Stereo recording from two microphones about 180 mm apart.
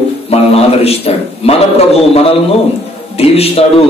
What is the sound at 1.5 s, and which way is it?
Speech, 35° left (ahead or behind).